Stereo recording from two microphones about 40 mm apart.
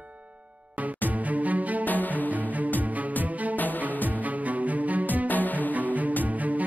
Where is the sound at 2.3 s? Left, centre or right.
Right.